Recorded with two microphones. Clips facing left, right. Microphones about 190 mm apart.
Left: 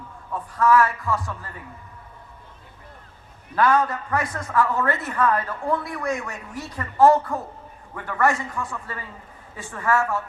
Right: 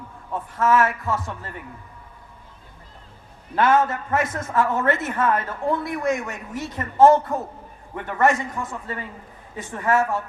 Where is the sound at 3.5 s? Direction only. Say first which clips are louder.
Right 1 dB; 25° right (ahead or behind).